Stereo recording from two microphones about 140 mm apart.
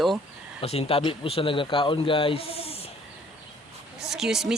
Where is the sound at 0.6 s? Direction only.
45° left (ahead or behind).